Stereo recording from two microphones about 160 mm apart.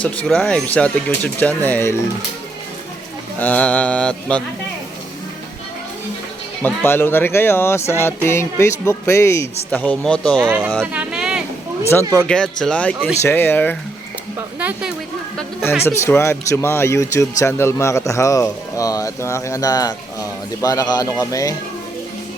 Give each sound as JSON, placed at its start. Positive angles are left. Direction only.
{"t": 0.0, "sound": "speech", "side_deg": 5}
{"t": 3.3, "sound": "speech", "side_deg": 10}
{"t": 6.8, "sound": "speech", "side_deg": 15}
{"t": 10.9, "sound": "a sound", "side_deg": -5}
{"t": 11.9, "sound": "speech", "side_deg": 15}
{"t": 15.8, "sound": "a man's voice", "side_deg": 15}